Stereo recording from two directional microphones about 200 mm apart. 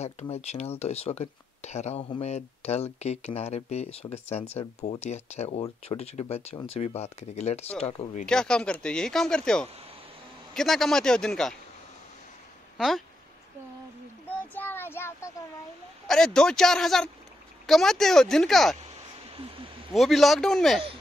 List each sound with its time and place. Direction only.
0.0 s speech: 35° left (ahead or behind)
8.3 s speech: 5° left (ahead or behind)
12.7 s speech: centre (ahead or behind)
14.3 s child singing: 10° left (ahead or behind)
16.1 s speech: 5° left (ahead or behind)
19.9 s speech: centre (ahead or behind)